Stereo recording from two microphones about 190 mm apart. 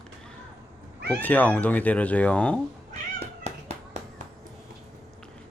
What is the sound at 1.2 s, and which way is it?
Speech, 10° left (ahead or behind).